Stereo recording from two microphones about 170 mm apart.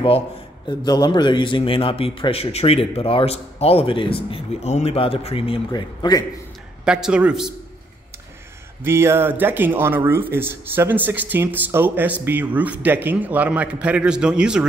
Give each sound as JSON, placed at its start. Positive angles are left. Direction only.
{"t": 0.7, "sound": "a man's voice", "side_deg": 25}
{"t": 6.8, "sound": "a man's voice", "side_deg": -5}
{"t": 8.8, "sound": "speech", "side_deg": -15}